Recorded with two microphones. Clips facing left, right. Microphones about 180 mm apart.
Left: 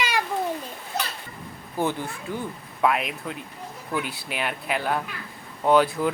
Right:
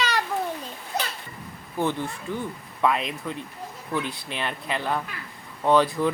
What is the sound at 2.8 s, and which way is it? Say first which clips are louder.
Speech: left 1 dB; 5° left (ahead or behind).